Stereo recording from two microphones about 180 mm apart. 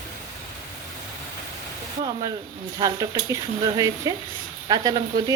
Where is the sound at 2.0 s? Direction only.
25° right (ahead or behind).